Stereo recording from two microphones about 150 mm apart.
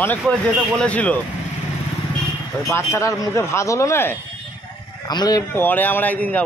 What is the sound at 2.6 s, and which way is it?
Speech, 20° left (ahead or behind).